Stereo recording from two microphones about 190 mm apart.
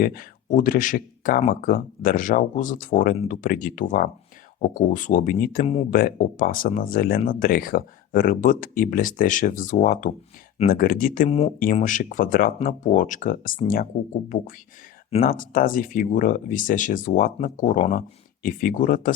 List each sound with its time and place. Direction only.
0.0 s speech: 50° left (ahead or behind)
11.3 s speech: 35° left (ahead or behind)